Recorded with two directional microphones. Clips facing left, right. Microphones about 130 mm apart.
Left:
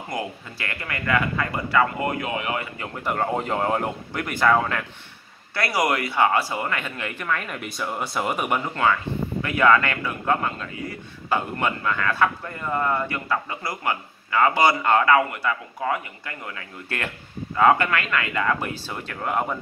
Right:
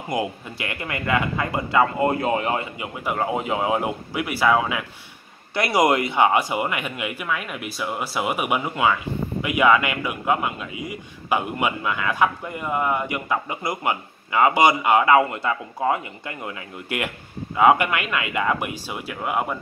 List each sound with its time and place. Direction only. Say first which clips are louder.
0.1 s a man's voice: right 5 dB; 20° right (ahead or behind)
2.8 s speech: even; 10° right (ahead or behind)
5.5 s speech: right 4 dB; 20° right (ahead or behind); by 19.6 s 5° right (ahead or behind)